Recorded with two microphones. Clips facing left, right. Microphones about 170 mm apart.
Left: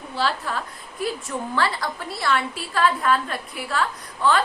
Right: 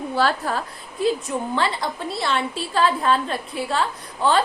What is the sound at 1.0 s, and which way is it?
A woman's voice, 20° right (ahead or behind).